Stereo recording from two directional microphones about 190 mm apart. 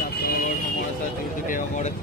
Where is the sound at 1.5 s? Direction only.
40° left (ahead or behind).